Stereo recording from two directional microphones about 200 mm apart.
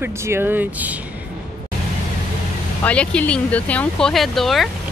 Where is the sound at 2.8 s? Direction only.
5° left (ahead or behind).